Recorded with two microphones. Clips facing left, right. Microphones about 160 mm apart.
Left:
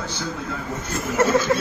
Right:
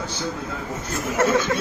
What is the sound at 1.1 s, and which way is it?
Speech, centre (ahead or behind).